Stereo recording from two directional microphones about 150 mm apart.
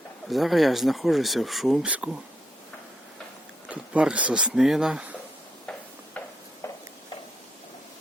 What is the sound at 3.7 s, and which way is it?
Speech, 10° right (ahead or behind).